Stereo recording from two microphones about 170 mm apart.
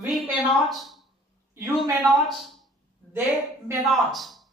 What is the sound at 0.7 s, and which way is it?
Speech, centre (ahead or behind).